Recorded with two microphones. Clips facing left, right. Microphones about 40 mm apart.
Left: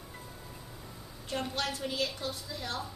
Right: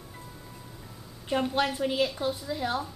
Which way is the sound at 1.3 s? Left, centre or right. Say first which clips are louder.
Right 7 dB; right.